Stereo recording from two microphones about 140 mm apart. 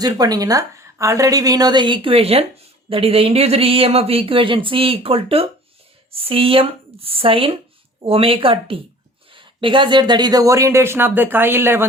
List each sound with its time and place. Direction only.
0.0 s speech: 25° right (ahead or behind)